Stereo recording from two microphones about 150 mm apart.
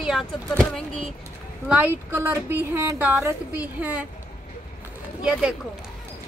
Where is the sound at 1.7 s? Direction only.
10° right (ahead or behind).